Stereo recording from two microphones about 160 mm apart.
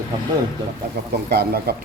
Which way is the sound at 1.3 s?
85° right.